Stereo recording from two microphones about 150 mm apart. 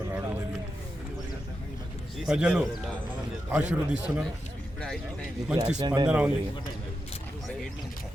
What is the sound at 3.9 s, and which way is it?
Speech, 10° right (ahead or behind).